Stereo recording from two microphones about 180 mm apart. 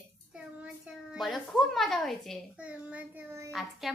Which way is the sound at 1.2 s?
Centre (ahead or behind).